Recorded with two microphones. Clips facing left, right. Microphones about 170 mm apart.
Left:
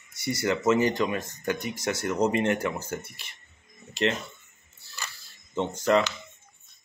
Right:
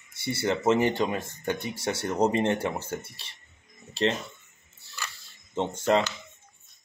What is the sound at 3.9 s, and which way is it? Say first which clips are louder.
Music: even; 30° right (ahead or behind).